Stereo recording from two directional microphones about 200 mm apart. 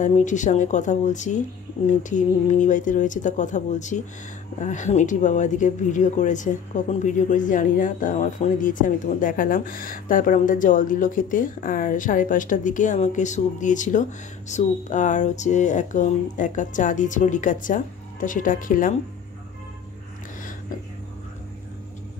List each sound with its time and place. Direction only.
0.0 s speech: 40° left (ahead or behind)